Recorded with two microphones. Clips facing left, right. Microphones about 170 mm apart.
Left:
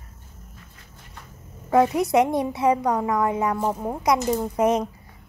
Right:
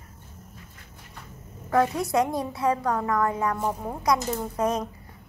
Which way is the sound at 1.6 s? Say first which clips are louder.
Left 4 dB; 20° left (ahead or behind).